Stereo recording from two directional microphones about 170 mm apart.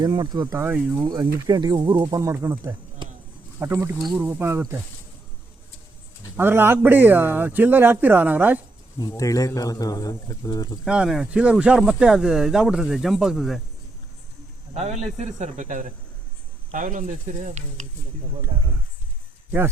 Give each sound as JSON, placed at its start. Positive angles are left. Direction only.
{"t": 0.0, "sound": "speech", "side_deg": -20}
{"t": 1.0, "sound": "speech", "side_deg": -20}
{"t": 3.0, "sound": "a sound", "side_deg": -30}
{"t": 3.6, "sound": "speech", "side_deg": -15}
{"t": 3.9, "sound": "speech", "side_deg": 0}
{"t": 4.2, "sound": "speech", "side_deg": -15}
{"t": 6.3, "sound": "speech", "side_deg": -15}
{"t": 9.0, "sound": "speech", "side_deg": 20}
{"t": 10.8, "sound": "speech", "side_deg": -5}
{"t": 14.7, "sound": "a man's voice", "side_deg": -40}